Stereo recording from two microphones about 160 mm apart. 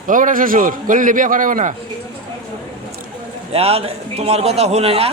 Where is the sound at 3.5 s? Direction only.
40° right (ahead or behind).